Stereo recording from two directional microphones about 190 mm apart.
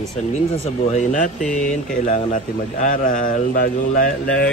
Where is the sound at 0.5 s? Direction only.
35° left (ahead or behind).